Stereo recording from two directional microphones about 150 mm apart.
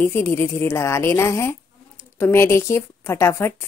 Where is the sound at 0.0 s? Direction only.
15° left (ahead or behind).